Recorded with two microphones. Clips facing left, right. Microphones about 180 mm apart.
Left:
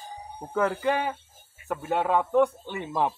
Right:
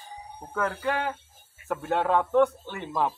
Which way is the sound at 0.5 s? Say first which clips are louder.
Left 3 dB; 10° left (ahead or behind).